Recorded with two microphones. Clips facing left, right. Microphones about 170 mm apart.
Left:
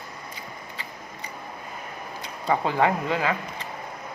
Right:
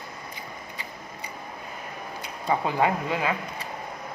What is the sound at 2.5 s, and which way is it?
Speech, 15° right (ahead or behind).